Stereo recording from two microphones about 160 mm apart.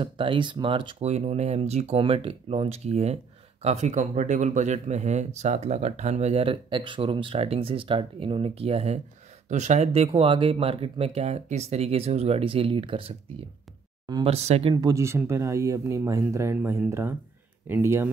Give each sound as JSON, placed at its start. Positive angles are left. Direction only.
{"t": 0.0, "sound": "speech", "side_deg": -30}
{"t": 1.0, "sound": "speech", "side_deg": -40}
{"t": 14.2, "sound": "speech", "side_deg": -40}
{"t": 14.8, "sound": "speech", "side_deg": -20}